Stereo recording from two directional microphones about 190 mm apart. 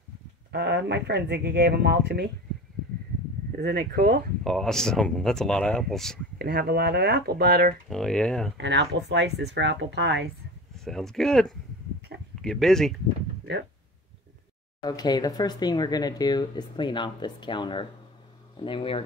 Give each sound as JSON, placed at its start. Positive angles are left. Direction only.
{"t": 0.5, "sound": "speech", "side_deg": -65}
{"t": 3.5, "sound": "speech", "side_deg": -50}
{"t": 4.5, "sound": "speech", "side_deg": 0}
{"t": 6.3, "sound": "speech", "side_deg": -55}
{"t": 7.9, "sound": "speech", "side_deg": 5}
{"t": 8.5, "sound": "speech", "side_deg": -65}
{"t": 10.8, "sound": "speech", "side_deg": 0}
{"t": 14.8, "sound": "speech", "side_deg": 20}